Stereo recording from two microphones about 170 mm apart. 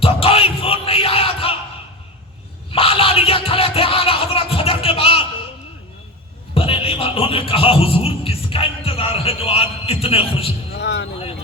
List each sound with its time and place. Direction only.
0.0 s battle cry: 35° left (ahead or behind)
2.7 s music: 35° left (ahead or behind)
6.5 s music: 35° left (ahead or behind)
10.7 s a sound: 80° left